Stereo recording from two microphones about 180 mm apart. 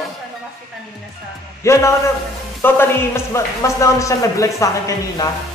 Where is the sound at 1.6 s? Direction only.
15° left (ahead or behind).